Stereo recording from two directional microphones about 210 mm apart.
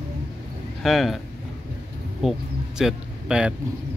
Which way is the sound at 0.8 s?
Centre (ahead or behind).